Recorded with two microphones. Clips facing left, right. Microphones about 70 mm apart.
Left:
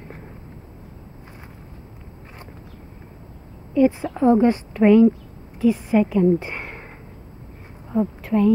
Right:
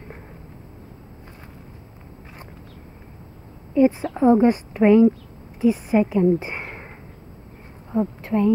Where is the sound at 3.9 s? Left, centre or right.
Centre.